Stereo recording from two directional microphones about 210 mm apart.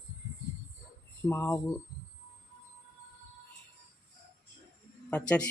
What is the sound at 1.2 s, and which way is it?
Speech, 10° left (ahead or behind).